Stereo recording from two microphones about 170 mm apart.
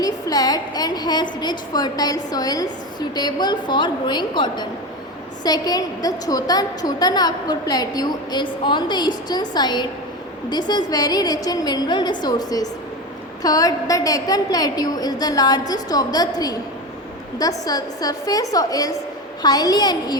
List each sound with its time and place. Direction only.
0.0 s a woman's voice: 20° left (ahead or behind)